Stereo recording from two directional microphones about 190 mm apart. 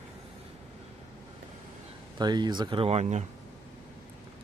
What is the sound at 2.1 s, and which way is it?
Speech, 20° right (ahead or behind).